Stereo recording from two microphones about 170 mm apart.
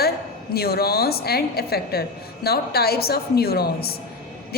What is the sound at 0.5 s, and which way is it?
A woman's voice, 65° left (ahead or behind).